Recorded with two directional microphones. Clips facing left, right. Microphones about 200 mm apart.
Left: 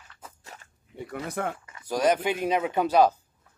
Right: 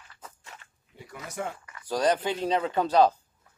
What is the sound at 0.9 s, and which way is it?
Speech, 60° left (ahead or behind).